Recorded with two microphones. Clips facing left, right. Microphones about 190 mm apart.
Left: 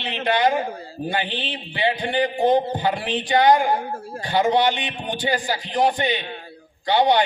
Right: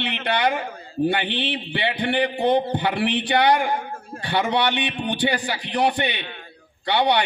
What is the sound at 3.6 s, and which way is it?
Speech, 35° left (ahead or behind).